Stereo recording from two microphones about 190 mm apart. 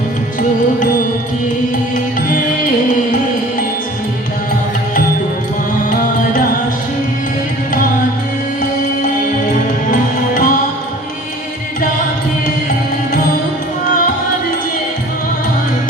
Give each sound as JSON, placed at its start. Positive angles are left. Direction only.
{"t": 9.9, "sound": "music", "side_deg": 45}